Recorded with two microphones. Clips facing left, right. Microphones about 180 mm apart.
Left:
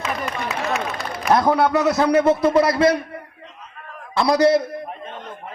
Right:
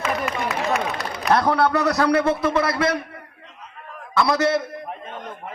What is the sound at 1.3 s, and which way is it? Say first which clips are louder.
A man's voice: left 2 dB; 10° left (ahead or behind).